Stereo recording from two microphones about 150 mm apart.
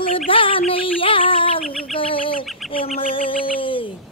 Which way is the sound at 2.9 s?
35° left (ahead or behind).